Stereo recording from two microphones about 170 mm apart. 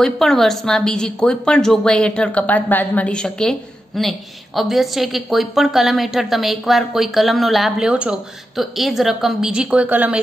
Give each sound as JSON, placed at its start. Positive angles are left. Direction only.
{"t": 0.0, "sound": "a woman's voice", "side_deg": 0}